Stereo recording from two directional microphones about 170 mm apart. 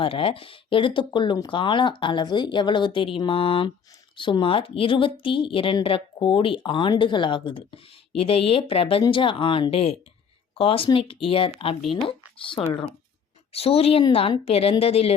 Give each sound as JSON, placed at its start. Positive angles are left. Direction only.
{"t": 0.0, "sound": "speech", "side_deg": 30}
{"t": 11.8, "sound": "speech", "side_deg": 0}
{"t": 12.0, "sound": "speech", "side_deg": 30}